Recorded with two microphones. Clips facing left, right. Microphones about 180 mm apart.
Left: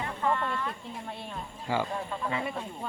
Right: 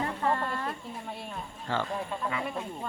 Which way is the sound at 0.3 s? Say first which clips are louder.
Left 1 dB; 40° right (ahead or behind).